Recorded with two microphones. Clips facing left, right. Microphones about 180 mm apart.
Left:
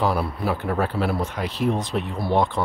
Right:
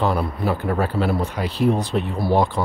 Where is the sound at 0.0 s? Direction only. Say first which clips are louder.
Right 2 dB; 5° left (ahead or behind).